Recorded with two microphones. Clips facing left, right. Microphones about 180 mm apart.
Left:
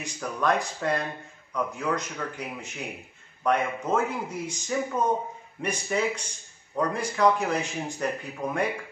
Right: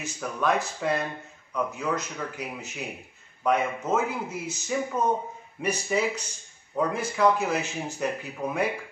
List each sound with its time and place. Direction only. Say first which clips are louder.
0.0 s a man's voice: even; 5° right (ahead or behind)